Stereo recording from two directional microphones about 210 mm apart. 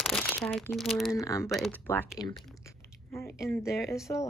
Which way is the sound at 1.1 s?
15° left (ahead or behind).